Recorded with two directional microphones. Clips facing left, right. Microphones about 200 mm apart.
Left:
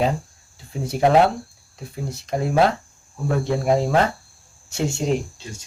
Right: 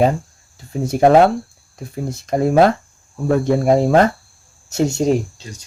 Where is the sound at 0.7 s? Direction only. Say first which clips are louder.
Right 5 dB; 45° right (ahead or behind).